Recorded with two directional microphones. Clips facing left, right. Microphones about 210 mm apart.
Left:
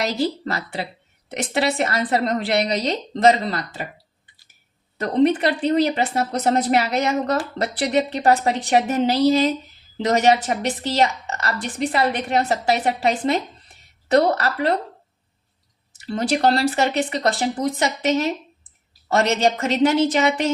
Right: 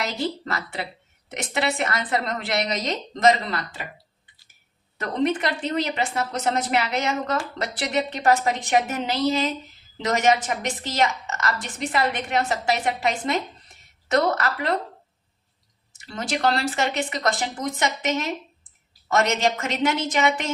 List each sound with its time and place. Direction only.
0.0 s speech: 35° left (ahead or behind)
4.9 s speech: 35° left (ahead or behind)
16.0 s speech: 35° left (ahead or behind)